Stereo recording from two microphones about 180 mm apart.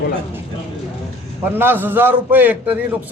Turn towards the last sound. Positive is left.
turn(degrees=-10)  # may be behind; listen again after turning